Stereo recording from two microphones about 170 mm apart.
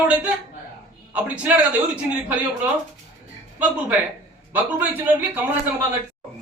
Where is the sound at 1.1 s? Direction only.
10° right (ahead or behind).